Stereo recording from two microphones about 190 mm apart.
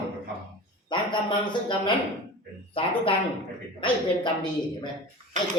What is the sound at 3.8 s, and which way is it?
A woman's voice, 25° left (ahead or behind).